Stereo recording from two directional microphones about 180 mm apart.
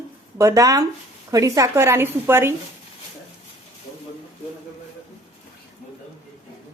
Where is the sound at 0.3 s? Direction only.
15° right (ahead or behind).